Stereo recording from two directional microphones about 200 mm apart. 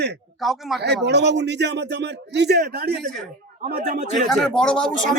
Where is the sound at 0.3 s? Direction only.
Centre (ahead or behind).